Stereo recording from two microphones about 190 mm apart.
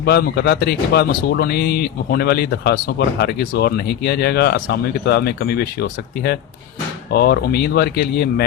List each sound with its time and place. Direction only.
0.0 s speech: 60° left (ahead or behind)